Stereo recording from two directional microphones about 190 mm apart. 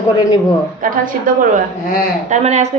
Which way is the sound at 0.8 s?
45° right (ahead or behind).